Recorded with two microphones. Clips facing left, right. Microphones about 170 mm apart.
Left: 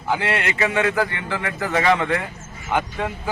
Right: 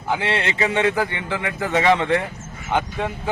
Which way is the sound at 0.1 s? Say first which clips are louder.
Even; 25° right (ahead or behind).